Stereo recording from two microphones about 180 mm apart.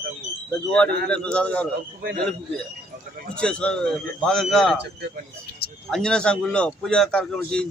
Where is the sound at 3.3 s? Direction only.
5° left (ahead or behind).